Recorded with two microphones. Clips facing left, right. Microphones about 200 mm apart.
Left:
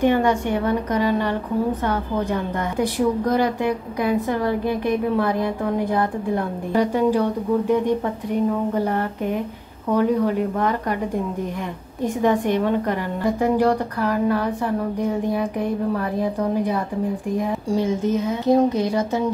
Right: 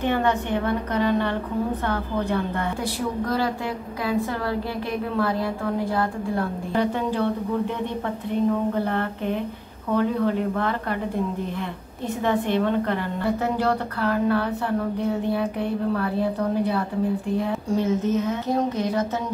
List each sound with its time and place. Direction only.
0.0 s a woman's voice: 10° left (ahead or behind)
12.2 s a woman's voice: 15° left (ahead or behind)